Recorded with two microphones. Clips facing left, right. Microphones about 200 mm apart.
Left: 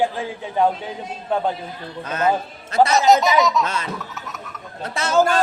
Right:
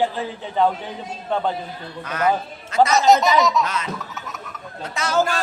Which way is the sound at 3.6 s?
30° left (ahead or behind).